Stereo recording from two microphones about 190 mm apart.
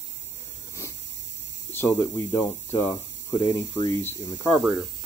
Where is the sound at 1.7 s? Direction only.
10° left (ahead or behind).